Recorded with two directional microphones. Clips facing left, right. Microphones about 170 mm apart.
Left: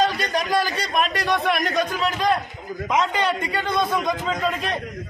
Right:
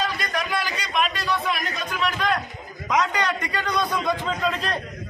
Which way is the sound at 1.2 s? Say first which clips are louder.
Left 4 dB; 60° left (ahead or behind).